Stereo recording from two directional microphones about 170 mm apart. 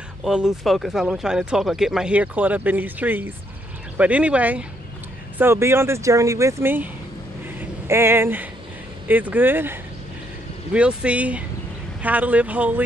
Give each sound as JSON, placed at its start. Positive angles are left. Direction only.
{"t": 0.2, "sound": "speech", "side_deg": -5}
{"t": 7.9, "sound": "speech", "side_deg": -15}